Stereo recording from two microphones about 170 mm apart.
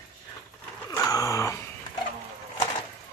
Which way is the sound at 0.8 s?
20° left (ahead or behind).